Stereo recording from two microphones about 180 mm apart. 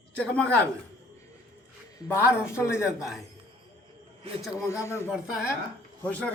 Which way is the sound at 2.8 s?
5° right (ahead or behind).